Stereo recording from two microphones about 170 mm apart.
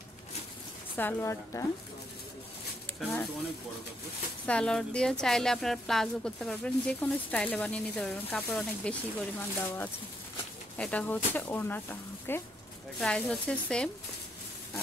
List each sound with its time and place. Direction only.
0.9 s speech: 10° left (ahead or behind)
3.0 s speech: 5° left (ahead or behind)
4.5 s speech: 5° left (ahead or behind)